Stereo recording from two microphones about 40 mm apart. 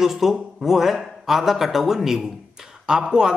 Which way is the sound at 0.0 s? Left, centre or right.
Centre.